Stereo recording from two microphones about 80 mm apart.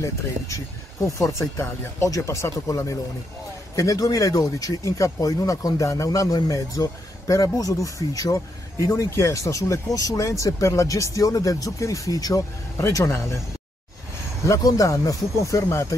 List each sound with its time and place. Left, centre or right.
1.0 s speech: left
12.7 s speech: left
14.4 s speech: left